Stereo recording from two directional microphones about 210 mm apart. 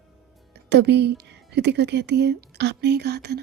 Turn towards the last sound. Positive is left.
turn(degrees=-50)  # may be behind; listen again after turning